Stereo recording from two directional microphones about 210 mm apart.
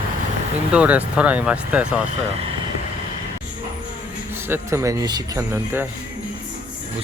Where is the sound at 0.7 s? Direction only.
5° right (ahead or behind).